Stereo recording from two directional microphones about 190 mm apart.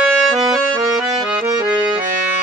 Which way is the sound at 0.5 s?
15° right (ahead or behind).